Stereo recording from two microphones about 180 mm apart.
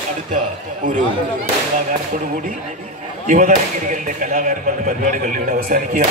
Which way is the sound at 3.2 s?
45° right (ahead or behind).